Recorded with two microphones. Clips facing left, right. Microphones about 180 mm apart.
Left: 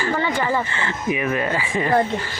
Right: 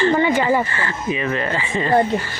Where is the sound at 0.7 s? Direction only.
20° left (ahead or behind).